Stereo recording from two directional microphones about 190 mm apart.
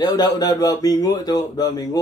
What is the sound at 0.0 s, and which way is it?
Speech, 20° left (ahead or behind).